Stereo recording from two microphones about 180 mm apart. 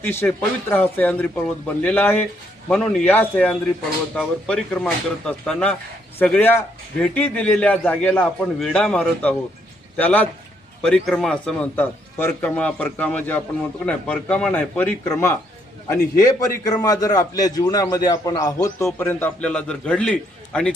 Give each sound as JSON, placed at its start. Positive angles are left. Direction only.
{"t": 0.0, "sound": "a man's voice", "side_deg": 10}